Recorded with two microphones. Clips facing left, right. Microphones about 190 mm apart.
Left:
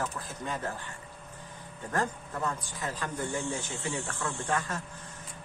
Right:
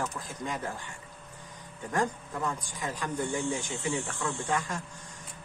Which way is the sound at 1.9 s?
15° right (ahead or behind).